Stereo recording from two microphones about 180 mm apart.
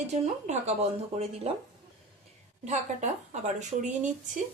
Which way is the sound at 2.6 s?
40° right (ahead or behind).